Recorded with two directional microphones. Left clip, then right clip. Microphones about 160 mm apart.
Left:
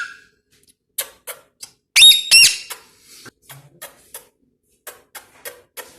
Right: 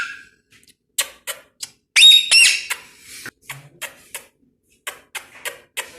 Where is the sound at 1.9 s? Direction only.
50° left (ahead or behind).